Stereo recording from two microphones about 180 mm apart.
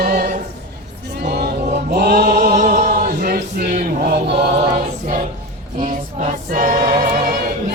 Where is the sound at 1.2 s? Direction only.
65° right (ahead or behind).